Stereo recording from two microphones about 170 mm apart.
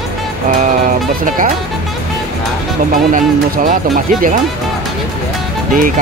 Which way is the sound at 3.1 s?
55° right (ahead or behind).